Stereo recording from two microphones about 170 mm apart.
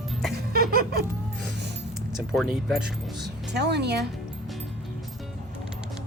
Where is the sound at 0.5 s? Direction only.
60° right (ahead or behind).